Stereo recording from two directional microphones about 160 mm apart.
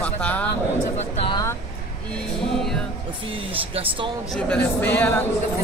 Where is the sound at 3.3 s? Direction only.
35° right (ahead or behind).